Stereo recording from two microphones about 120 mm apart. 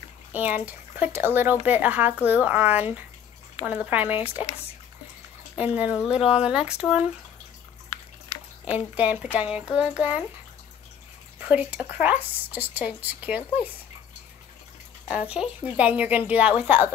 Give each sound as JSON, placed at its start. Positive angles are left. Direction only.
{"t": 0.3, "sound": "speech", "side_deg": -15}
{"t": 5.8, "sound": "speech", "side_deg": -10}
{"t": 8.6, "sound": "speech", "side_deg": -10}
{"t": 11.3, "sound": "speech", "side_deg": -15}
{"t": 15.0, "sound": "speech", "side_deg": -10}